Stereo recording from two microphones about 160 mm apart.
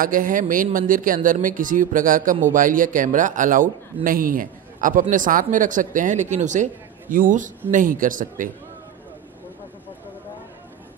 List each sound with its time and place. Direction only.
0.0 s speech: 60° right (ahead or behind)